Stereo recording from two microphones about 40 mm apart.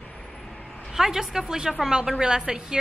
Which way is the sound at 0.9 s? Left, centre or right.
Centre.